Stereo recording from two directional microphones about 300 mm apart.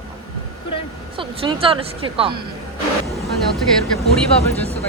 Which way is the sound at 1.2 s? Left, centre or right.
Centre.